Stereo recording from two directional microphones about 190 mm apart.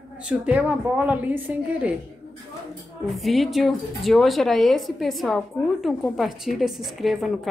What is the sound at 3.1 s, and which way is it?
Speech, centre (ahead or behind).